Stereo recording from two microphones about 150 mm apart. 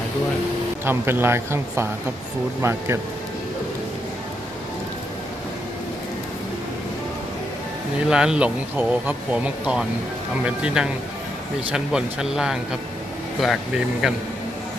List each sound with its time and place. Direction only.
0.9 s speech: 15° right (ahead or behind)
8.1 s speech: 5° right (ahead or behind)